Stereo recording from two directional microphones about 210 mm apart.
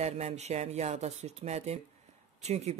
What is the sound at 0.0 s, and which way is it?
Speech, 30° right (ahead or behind).